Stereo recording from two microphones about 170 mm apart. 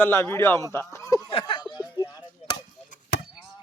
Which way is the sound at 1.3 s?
30° left (ahead or behind).